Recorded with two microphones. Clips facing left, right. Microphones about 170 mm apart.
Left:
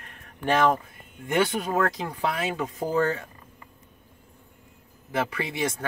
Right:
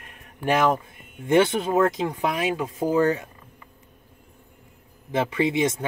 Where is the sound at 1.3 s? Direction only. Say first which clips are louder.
Right 5 dB; 25° right (ahead or behind).